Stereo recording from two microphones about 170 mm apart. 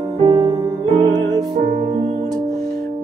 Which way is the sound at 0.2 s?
30° right (ahead or behind).